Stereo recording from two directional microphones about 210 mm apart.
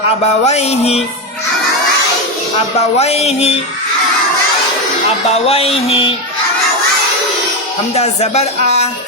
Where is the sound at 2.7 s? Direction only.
30° left (ahead or behind).